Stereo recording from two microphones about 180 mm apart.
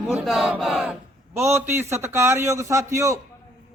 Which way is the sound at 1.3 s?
15° right (ahead or behind).